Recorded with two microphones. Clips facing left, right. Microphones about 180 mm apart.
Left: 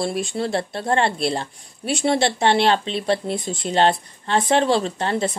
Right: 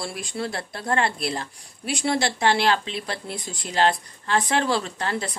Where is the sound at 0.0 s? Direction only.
25° left (ahead or behind).